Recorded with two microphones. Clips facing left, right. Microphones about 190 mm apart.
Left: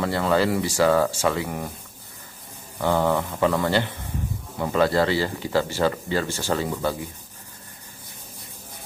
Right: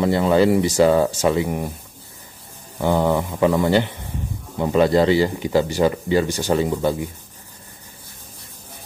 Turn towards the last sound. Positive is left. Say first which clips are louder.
# right 5 dB
turn(degrees=-20)  # may be behind; listen again after turning